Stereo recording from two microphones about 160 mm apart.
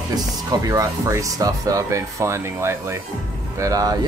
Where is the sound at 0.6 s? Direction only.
20° right (ahead or behind).